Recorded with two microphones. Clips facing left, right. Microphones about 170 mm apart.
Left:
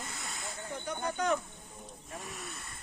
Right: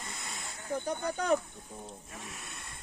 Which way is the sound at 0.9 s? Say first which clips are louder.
Right 2 dB; 35° right (ahead or behind).